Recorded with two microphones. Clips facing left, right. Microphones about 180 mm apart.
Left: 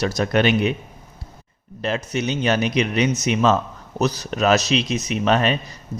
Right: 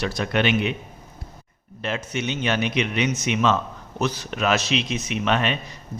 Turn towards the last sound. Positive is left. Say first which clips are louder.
# left 4 dB
turn(degrees=40)  # may be behind; listen again after turning